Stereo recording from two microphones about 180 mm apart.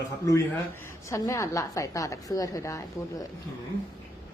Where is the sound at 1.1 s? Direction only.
20° left (ahead or behind).